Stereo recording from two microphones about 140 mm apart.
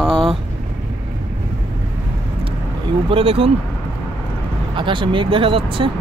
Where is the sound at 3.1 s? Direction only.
40° right (ahead or behind).